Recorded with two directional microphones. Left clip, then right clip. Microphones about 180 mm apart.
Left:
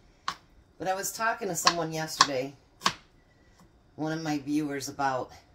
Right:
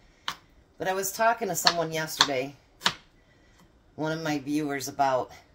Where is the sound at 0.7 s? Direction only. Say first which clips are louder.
Right 3 dB; 40° right (ahead or behind).